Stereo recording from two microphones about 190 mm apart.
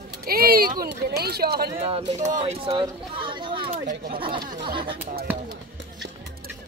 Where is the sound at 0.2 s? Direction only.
50° right (ahead or behind).